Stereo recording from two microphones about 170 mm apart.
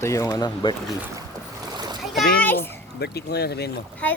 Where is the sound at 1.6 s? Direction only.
25° right (ahead or behind).